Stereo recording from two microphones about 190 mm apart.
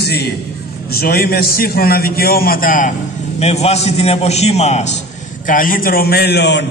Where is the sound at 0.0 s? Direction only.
60° left (ahead or behind).